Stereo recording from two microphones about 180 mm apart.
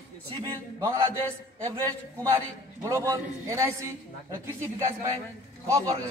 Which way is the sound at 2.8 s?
15° right (ahead or behind).